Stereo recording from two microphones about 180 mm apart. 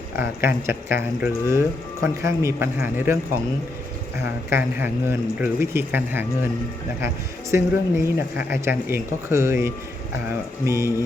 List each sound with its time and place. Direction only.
0.2 s speech: 15° right (ahead or behind)
4.5 s speech: 10° right (ahead or behind)
7.5 s speech: 15° right (ahead or behind)